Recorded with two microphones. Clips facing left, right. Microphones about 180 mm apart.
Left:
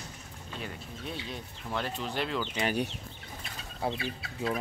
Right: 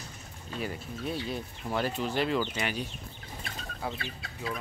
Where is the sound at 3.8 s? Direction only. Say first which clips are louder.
Left 4 dB; 25° left (ahead or behind).